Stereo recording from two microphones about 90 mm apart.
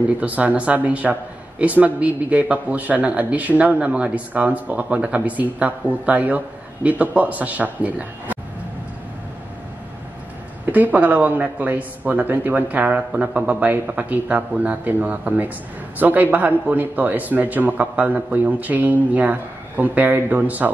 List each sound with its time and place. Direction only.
0.2 s a man's voice: 15° right (ahead or behind)
10.6 s a man's voice: 20° right (ahead or behind)